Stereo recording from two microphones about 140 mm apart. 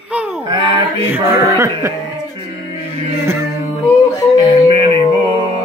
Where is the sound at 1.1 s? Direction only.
20° right (ahead or behind).